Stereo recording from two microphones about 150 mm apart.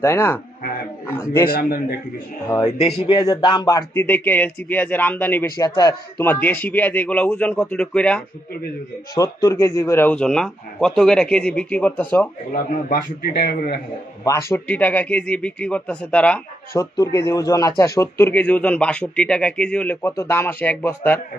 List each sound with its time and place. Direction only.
0.0 s speech: 15° left (ahead or behind)
1.4 s speech: 90° left
3.1 s speech: 30° left (ahead or behind)
4.0 s speech: 10° left (ahead or behind)
5.6 s speech: 25° left (ahead or behind)
6.2 s speech: 10° left (ahead or behind)
9.1 s speech: 25° left (ahead or behind)
12.9 s speech: 90° left
14.2 s speech: 25° left (ahead or behind)
14.7 s speech: 10° left (ahead or behind)
16.7 s speech: 25° left (ahead or behind)